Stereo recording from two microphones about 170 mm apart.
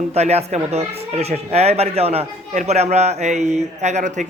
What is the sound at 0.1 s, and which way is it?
Speech, 40° right (ahead or behind).